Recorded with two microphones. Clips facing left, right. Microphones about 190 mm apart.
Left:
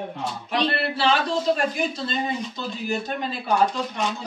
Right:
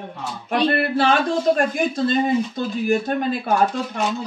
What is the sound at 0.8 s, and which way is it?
Speech, 50° right (ahead or behind).